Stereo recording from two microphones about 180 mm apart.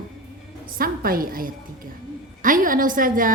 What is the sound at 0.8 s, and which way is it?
Speech, 55° right (ahead or behind).